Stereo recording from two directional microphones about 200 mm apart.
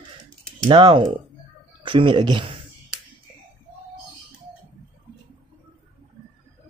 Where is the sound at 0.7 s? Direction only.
25° right (ahead or behind).